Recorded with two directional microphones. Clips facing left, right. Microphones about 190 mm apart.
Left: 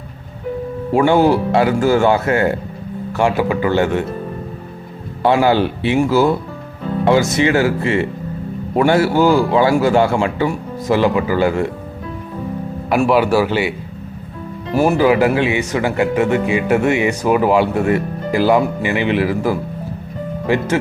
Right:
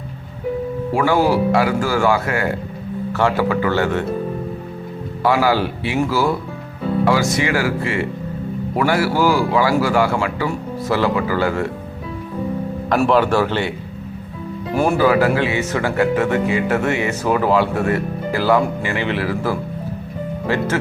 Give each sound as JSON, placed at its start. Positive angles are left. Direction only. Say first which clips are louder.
{"t": 0.9, "sound": "a man's voice", "louder": "left 4 dB", "side_deg": 25}
{"t": 3.1, "sound": "speech", "louder": "left 2 dB", "side_deg": 15}
{"t": 5.2, "sound": "a man's voice", "louder": "left 3 dB", "side_deg": 25}
{"t": 13.1, "sound": "speech", "louder": "left 2 dB", "side_deg": 10}
{"t": 14.9, "sound": "speech", "louder": "left 1 dB", "side_deg": 15}